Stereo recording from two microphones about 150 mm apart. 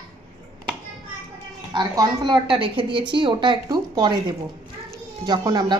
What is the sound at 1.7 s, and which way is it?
A woman's voice, 30° right (ahead or behind).